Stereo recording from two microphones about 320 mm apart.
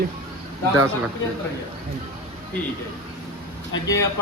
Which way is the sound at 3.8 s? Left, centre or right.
Centre.